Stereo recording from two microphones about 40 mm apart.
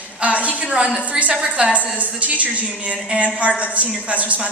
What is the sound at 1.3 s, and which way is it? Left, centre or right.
Speech, centre.